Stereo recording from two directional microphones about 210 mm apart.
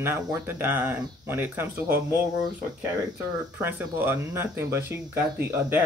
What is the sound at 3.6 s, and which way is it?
Speech, 10° right (ahead or behind).